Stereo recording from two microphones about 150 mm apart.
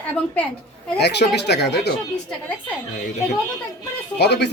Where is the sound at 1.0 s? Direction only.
90° left.